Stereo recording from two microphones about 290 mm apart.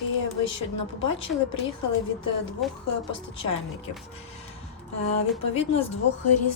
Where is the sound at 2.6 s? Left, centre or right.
Centre.